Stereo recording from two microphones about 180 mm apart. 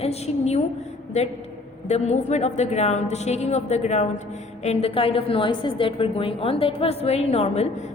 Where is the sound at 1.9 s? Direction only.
40° left (ahead or behind).